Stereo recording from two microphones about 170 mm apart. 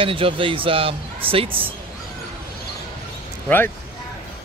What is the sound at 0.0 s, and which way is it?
Speech, 30° right (ahead or behind).